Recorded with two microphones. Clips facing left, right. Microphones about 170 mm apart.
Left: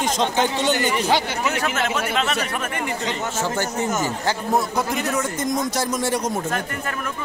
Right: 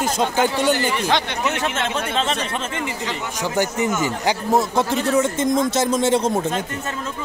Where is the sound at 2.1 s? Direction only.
30° right (ahead or behind).